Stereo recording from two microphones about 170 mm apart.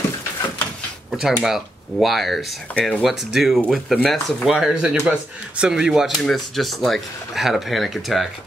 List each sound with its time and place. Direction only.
1.4 s speech: centre (ahead or behind)